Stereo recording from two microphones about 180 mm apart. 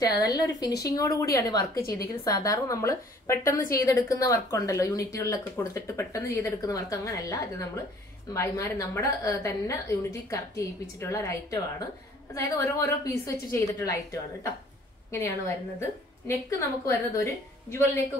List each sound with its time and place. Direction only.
0.2 s a woman's voice: 20° left (ahead or behind)
12.4 s speech: 15° left (ahead or behind)
15.0 s speech: 15° left (ahead or behind)